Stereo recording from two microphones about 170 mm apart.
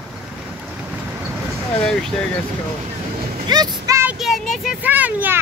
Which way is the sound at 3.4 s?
25° right (ahead or behind).